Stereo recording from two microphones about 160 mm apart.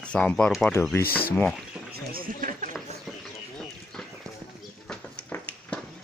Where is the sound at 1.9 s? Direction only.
65° right (ahead or behind).